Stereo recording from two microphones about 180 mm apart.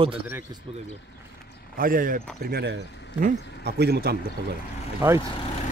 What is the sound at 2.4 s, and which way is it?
Speech, 65° right (ahead or behind).